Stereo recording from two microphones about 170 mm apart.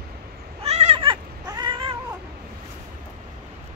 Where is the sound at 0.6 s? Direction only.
40° right (ahead or behind).